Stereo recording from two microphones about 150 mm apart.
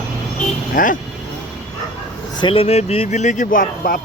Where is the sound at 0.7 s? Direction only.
65° left (ahead or behind).